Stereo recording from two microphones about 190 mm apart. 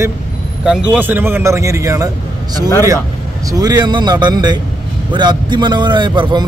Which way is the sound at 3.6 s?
20° right (ahead or behind).